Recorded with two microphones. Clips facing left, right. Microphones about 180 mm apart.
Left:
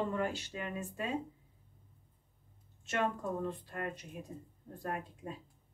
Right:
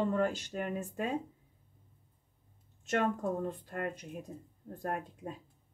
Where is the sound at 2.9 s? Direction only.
45° right (ahead or behind).